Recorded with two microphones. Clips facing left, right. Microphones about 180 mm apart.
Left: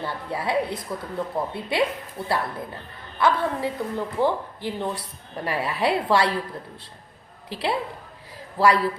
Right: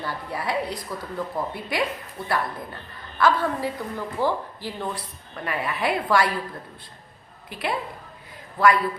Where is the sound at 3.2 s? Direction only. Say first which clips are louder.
Even; 20° left (ahead or behind).